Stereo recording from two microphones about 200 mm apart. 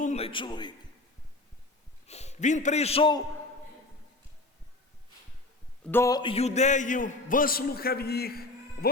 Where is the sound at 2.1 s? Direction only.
35° left (ahead or behind).